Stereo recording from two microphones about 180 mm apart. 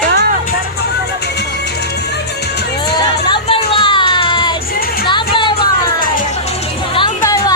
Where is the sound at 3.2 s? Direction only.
30° left (ahead or behind).